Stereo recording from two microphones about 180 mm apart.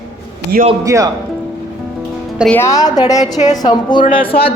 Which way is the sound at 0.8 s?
20° right (ahead or behind).